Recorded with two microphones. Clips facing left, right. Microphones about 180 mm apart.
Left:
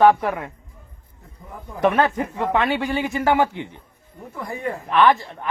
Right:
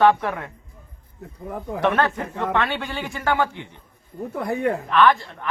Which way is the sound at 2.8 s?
20° left (ahead or behind).